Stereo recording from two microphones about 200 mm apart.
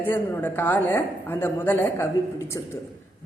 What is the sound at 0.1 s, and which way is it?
A woman's voice, 10° left (ahead or behind).